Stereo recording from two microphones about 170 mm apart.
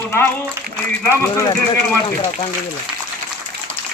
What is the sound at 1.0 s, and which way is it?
Speech, 20° left (ahead or behind).